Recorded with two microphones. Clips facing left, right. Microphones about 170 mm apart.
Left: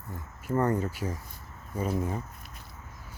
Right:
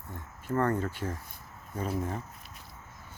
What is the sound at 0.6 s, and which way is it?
Speech, 10° left (ahead or behind).